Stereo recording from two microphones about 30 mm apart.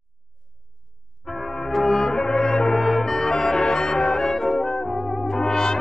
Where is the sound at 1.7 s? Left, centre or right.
Centre.